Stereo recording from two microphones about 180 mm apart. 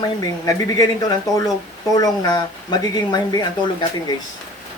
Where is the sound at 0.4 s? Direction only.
20° left (ahead or behind).